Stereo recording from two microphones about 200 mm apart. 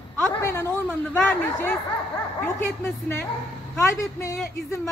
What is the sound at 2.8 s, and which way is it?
A man's voice, 10° left (ahead or behind).